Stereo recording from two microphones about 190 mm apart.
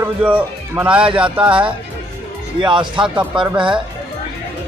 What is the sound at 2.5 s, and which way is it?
Speech, 25° right (ahead or behind).